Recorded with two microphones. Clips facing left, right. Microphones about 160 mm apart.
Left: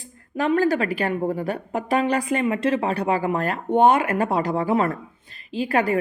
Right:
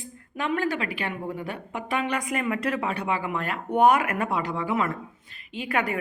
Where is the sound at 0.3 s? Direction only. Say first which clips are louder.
Left 7 dB; 35° left (ahead or behind).